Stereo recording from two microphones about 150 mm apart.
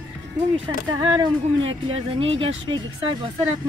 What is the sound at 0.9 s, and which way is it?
Speech, 30° right (ahead or behind).